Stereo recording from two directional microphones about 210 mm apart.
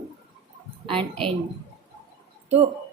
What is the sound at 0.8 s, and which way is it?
Speech, 25° right (ahead or behind).